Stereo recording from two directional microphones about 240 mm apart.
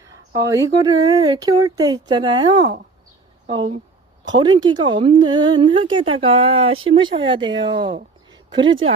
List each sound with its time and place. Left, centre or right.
0.1 s speech: centre